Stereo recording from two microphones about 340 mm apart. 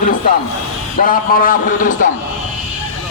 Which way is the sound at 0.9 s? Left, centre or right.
Left.